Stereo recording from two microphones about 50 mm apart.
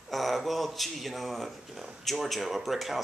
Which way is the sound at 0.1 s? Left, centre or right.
Centre.